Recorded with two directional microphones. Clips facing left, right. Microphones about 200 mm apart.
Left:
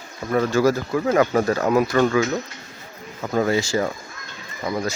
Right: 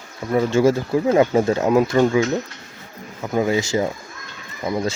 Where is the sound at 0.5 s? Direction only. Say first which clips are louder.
Right 4 dB; 25° right (ahead or behind).